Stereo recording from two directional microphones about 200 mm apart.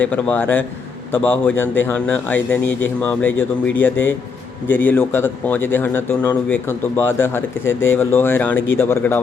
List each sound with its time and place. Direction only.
0.0 s a man's voice: 10° left (ahead or behind)
7.7 s speech: 75° left (ahead or behind)
7.9 s a man's voice: 10° left (ahead or behind)
8.5 s speech: 80° left
8.8 s a man's voice: 10° left (ahead or behind)